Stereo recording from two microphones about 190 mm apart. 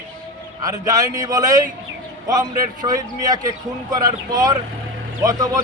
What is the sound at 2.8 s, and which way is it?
A man's voice, 20° right (ahead or behind).